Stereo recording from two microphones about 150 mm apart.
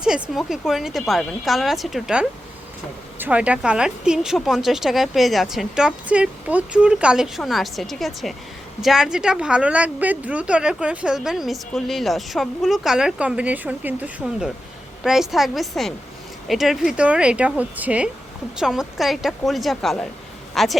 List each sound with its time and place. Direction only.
0.0 s a woman's voice: 5° right (ahead or behind)